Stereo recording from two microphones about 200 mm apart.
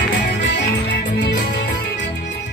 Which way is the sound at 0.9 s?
60° left (ahead or behind).